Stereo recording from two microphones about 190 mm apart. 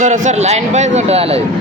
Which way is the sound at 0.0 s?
40° right (ahead or behind).